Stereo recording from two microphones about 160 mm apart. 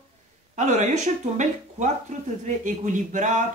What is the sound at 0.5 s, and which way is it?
A man's voice, 50° right (ahead or behind).